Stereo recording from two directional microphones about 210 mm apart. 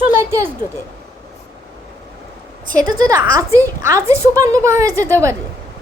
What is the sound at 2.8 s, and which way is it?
A woman's voice, 20° right (ahead or behind).